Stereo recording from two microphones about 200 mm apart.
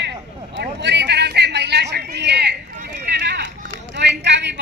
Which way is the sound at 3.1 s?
60° right (ahead or behind).